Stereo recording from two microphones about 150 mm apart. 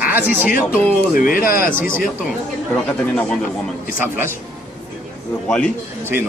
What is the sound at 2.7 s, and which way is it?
Speech, 5° left (ahead or behind).